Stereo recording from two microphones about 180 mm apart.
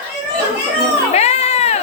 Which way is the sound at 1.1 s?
35° left (ahead or behind).